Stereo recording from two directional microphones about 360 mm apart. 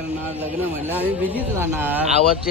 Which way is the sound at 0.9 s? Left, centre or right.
Centre.